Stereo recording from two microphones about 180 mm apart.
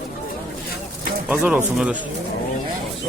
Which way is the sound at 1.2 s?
10° right (ahead or behind).